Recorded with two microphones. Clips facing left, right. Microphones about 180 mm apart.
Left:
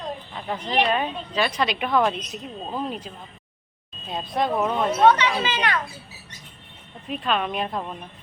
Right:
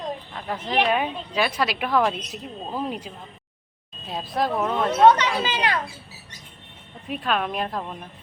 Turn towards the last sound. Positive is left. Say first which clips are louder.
# even
turn(degrees=0)  # may be behind; listen again after turning